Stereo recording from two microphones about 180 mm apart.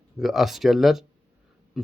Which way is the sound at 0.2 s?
Centre (ahead or behind).